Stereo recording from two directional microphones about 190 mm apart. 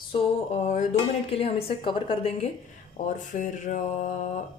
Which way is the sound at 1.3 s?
30° left (ahead or behind).